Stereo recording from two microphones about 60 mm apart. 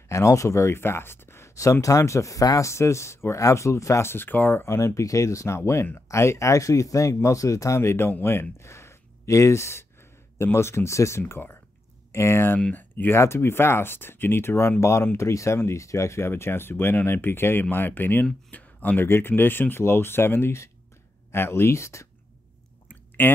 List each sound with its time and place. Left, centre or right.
0.1 s speech: left
1.5 s speech: left
2.7 s speech: left
4.6 s speech: left
12.7 s speech: left
13.1 s speech: left
22.8 s a sound: left